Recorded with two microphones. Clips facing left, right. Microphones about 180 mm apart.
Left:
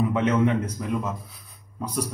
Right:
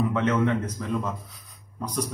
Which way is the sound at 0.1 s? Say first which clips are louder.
Left 2 dB; 15° left (ahead or behind).